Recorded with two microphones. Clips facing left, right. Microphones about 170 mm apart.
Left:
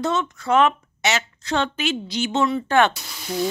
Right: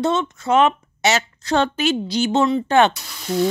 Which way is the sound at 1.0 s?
40° right (ahead or behind).